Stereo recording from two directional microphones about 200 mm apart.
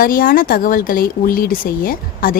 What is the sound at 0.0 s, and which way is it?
Speech, 45° left (ahead or behind).